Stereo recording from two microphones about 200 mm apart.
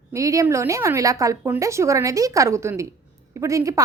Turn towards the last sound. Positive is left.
turn(degrees=-15)  # may be behind; listen again after turning